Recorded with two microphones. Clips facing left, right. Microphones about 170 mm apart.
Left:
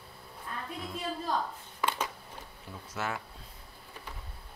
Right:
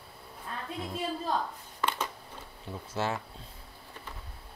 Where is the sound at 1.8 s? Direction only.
10° left (ahead or behind).